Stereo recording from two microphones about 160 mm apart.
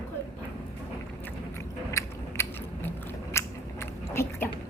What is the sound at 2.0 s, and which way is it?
Biting, 20° left (ahead or behind).